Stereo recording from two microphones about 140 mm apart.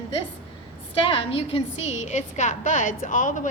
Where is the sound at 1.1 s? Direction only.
40° left (ahead or behind).